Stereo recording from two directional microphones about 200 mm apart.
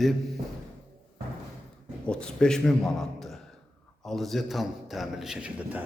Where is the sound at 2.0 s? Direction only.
5° left (ahead or behind).